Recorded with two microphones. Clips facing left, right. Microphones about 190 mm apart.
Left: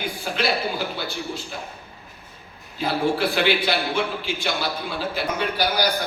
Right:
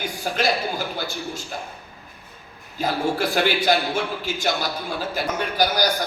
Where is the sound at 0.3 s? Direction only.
45° right (ahead or behind).